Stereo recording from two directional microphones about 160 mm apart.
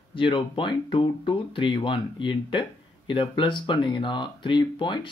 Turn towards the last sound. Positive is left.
turn(degrees=30)  # may be behind; listen again after turning